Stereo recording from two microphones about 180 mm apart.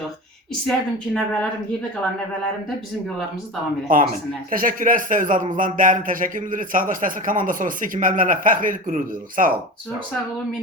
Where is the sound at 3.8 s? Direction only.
50° right (ahead or behind).